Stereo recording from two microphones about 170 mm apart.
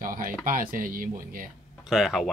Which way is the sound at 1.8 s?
Centre (ahead or behind).